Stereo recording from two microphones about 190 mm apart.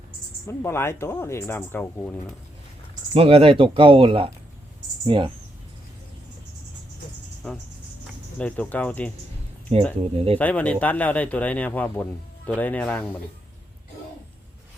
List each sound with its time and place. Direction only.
0.4 s speech: 15° left (ahead or behind)
3.2 s speech: 30° right (ahead or behind)
7.4 s speech: 5° left (ahead or behind)
9.7 s speech: 30° right (ahead or behind)
10.3 s speech: 5° left (ahead or behind)